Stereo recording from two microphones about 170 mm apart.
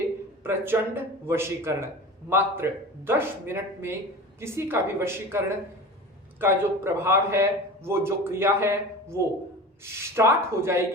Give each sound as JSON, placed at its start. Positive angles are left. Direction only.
{"t": 0.4, "sound": "a man's voice", "side_deg": -10}
{"t": 6.4, "sound": "a man's voice", "side_deg": -15}